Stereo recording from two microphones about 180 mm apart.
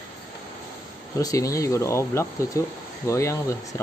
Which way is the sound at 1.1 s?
20° left (ahead or behind).